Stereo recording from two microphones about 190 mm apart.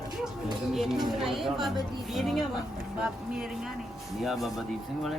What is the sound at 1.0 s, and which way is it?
Speech, centre (ahead or behind).